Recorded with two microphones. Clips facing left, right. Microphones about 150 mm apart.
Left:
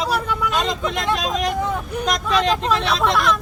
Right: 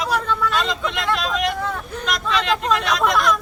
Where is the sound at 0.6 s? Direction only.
40° left (ahead or behind).